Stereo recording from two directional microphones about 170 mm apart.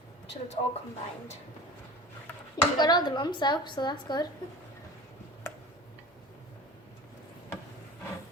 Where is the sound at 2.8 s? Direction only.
25° left (ahead or behind).